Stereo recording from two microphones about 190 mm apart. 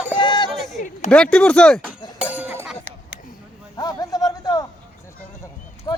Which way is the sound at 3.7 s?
20° left (ahead or behind).